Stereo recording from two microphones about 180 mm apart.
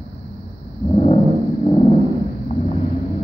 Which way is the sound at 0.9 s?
25° left (ahead or behind).